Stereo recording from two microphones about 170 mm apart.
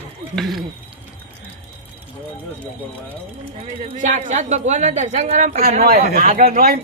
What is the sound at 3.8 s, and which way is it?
Speech, 45° right (ahead or behind).